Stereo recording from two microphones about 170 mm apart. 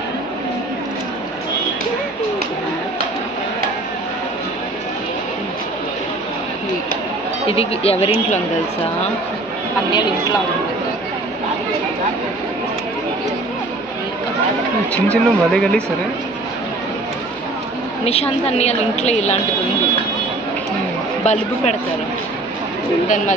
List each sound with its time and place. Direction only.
7.4 s a woman's voice: 35° left (ahead or behind)
15.0 s speech: 5° left (ahead or behind)
18.0 s a woman's voice: 35° left (ahead or behind)
21.2 s a woman's voice: 40° left (ahead or behind)
23.0 s speech: 50° left (ahead or behind)